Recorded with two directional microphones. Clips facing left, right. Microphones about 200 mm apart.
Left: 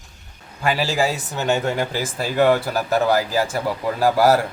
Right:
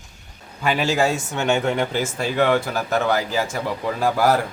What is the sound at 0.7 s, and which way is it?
Speech, centre (ahead or behind).